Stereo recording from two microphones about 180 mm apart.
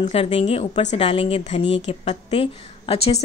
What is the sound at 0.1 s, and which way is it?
A woman's voice, 35° left (ahead or behind).